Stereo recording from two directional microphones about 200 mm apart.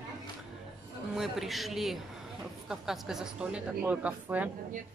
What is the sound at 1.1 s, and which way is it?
Speech, centre (ahead or behind).